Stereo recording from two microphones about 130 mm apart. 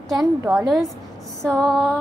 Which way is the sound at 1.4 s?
5° left (ahead or behind).